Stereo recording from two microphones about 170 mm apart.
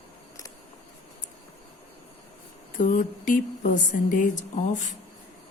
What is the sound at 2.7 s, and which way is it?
Speech, 50° left (ahead or behind).